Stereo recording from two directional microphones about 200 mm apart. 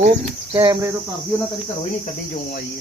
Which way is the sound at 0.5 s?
20° right (ahead or behind).